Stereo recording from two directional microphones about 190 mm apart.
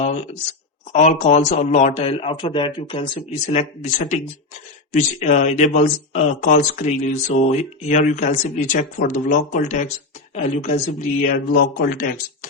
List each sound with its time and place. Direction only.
0.9 s speech: 35° left (ahead or behind)
3.2 s speech: 35° left (ahead or behind)